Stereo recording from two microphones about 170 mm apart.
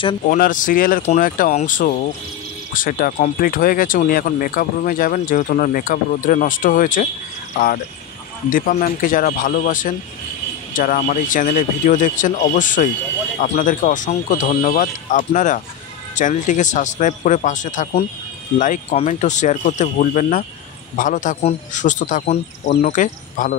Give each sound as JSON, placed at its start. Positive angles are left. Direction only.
{"t": 0.3, "sound": "speech", "side_deg": 50}